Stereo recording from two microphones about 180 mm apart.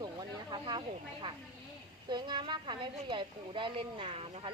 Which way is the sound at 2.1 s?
25° right (ahead or behind).